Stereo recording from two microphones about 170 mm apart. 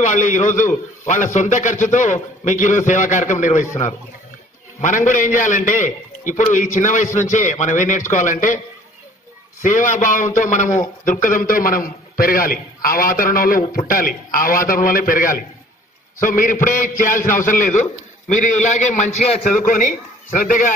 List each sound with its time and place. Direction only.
0.0 s a man's voice: 45° left (ahead or behind)
4.8 s a man's voice: 50° left (ahead or behind)
9.6 s a man's voice: 50° left (ahead or behind)